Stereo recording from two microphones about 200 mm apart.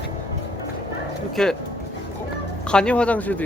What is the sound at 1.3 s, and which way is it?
Speech, 5° left (ahead or behind).